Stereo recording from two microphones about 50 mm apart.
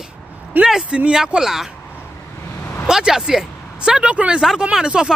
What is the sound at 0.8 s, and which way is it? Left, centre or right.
Speech, right.